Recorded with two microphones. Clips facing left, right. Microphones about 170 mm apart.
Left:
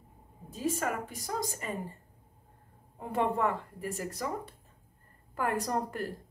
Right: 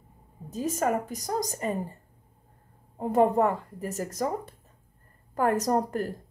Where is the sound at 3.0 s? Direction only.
40° right (ahead or behind).